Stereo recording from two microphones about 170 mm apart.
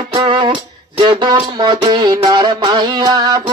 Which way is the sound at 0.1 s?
30° right (ahead or behind).